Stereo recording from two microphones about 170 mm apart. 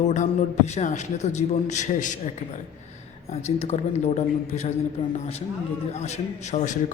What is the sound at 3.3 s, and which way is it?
A man's voice, 40° left (ahead or behind).